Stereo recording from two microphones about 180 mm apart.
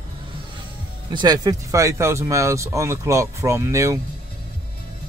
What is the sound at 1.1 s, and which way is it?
Speech, 25° right (ahead or behind).